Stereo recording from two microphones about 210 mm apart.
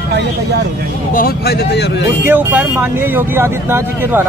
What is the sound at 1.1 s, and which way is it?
Speech, 45° left (ahead or behind).